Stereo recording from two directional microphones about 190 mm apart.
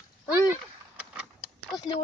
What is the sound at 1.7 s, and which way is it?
Speech, 20° left (ahead or behind).